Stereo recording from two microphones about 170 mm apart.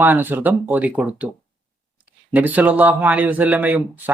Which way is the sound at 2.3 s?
10° right (ahead or behind).